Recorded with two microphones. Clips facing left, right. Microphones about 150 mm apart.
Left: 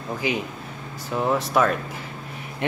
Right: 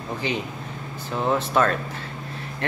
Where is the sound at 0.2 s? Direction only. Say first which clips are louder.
Left 2 dB; 10° left (ahead or behind).